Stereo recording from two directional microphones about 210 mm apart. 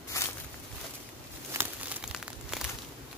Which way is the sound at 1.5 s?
10° right (ahead or behind).